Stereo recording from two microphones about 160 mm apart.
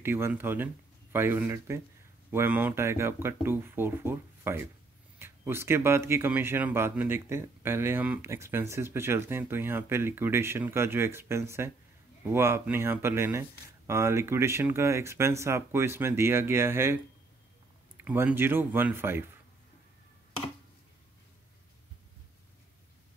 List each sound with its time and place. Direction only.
0.0 s speech: 15° right (ahead or behind)